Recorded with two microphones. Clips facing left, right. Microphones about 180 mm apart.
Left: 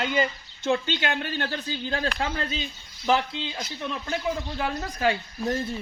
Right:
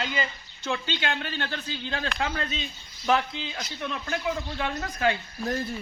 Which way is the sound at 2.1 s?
30° left (ahead or behind).